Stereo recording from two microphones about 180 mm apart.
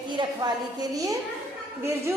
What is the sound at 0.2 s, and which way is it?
A woman's voice, 20° right (ahead or behind).